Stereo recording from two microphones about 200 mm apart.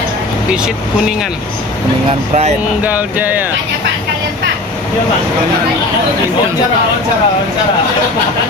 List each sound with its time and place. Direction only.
2.0 s speech: 30° right (ahead or behind)
2.8 s music: 10° right (ahead or behind)